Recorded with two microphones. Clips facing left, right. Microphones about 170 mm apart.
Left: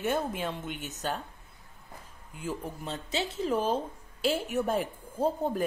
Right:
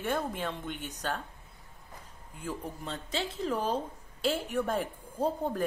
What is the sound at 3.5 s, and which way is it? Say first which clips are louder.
Speech: left 3 dB; 25° left (ahead or behind).